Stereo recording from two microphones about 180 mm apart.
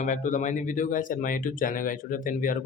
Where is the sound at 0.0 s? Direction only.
45° left (ahead or behind).